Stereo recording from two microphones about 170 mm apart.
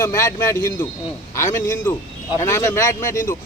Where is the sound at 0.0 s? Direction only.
20° left (ahead or behind).